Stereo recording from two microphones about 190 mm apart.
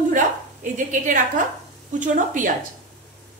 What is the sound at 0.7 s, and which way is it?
A woman's voice, 40° right (ahead or behind).